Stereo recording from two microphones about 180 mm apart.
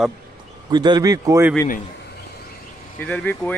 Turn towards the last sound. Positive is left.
turn(degrees=5)  # may be behind; listen again after turning